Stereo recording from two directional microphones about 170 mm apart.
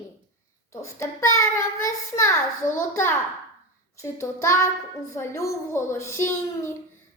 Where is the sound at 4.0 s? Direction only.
15° left (ahead or behind).